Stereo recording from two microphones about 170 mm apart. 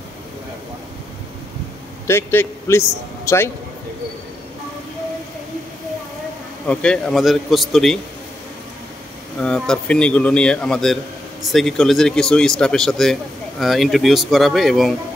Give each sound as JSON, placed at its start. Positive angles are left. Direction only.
{"t": 2.0, "sound": "a man's voice", "side_deg": 15}
{"t": 6.6, "sound": "speech", "side_deg": 5}
{"t": 9.4, "sound": "speech", "side_deg": 5}